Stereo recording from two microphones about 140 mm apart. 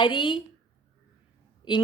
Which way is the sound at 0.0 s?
35° left (ahead or behind).